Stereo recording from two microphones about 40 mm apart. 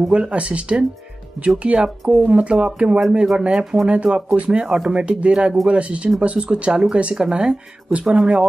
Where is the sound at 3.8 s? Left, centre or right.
Right.